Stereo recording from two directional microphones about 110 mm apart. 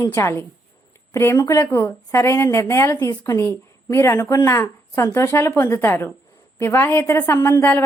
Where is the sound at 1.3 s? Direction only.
35° left (ahead or behind).